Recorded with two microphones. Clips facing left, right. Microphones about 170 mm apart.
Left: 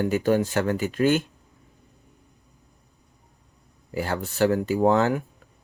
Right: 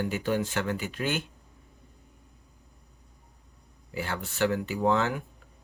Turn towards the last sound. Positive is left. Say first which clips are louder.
# left 6 dB
turn(degrees=45)  # may be behind; listen again after turning